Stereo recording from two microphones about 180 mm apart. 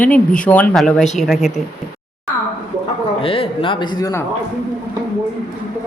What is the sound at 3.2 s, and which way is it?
A man's voice, 30° left (ahead or behind).